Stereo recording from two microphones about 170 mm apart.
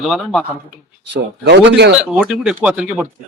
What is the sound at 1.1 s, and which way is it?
Speech, 85° right.